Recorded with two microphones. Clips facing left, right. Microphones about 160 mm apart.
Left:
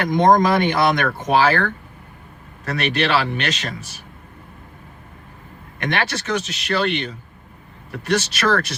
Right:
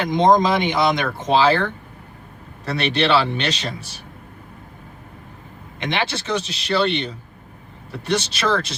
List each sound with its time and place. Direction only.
0.0 s speech: 20° right (ahead or behind)
5.8 s speech: 20° right (ahead or behind)